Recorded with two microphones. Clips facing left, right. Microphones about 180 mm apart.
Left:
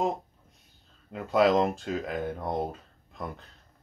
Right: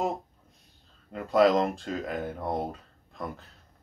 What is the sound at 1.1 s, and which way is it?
Speech, centre (ahead or behind).